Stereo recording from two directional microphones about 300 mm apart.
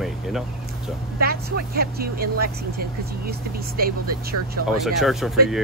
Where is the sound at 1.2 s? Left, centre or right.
Right.